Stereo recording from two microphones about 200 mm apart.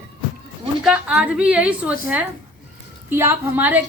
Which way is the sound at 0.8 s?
5° right (ahead or behind).